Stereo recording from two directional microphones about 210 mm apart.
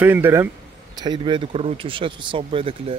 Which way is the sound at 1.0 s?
20° right (ahead or behind).